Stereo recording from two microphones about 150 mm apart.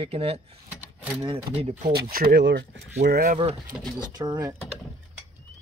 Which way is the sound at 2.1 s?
85° right.